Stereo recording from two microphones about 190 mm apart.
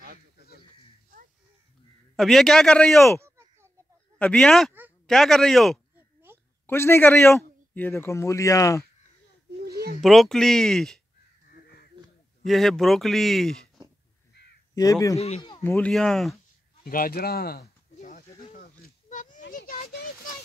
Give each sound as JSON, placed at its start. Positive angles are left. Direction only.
{"t": 2.1, "sound": "a man's voice", "side_deg": 0}
{"t": 3.2, "sound": "a sound", "side_deg": -15}
{"t": 4.2, "sound": "a man's voice", "side_deg": 5}
{"t": 6.6, "sound": "speech", "side_deg": 10}
{"t": 9.7, "sound": "a sound", "side_deg": -55}
{"t": 10.0, "sound": "a man's voice", "side_deg": 0}
{"t": 11.4, "sound": "crow", "side_deg": 50}
{"t": 12.4, "sound": "a man's voice", "side_deg": 0}
{"t": 14.8, "sound": "speech", "side_deg": 15}
{"t": 15.1, "sound": "speech", "side_deg": 35}
{"t": 15.6, "sound": "a man's voice", "side_deg": 10}
{"t": 16.8, "sound": "a sound", "side_deg": 50}